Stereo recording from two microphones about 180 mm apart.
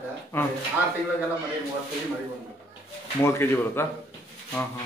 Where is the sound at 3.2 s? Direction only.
15° left (ahead or behind).